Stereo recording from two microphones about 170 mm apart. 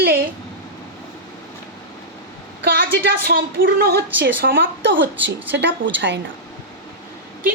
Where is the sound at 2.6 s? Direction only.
60° right (ahead or behind); by 6.1 s 90° right.